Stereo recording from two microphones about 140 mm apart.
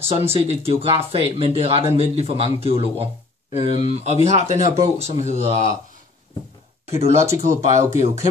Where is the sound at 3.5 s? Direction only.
40° right (ahead or behind).